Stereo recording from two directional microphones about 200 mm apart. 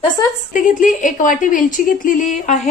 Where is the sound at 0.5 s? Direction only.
40° left (ahead or behind).